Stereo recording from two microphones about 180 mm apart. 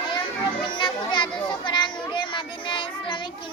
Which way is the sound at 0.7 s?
25° left (ahead or behind).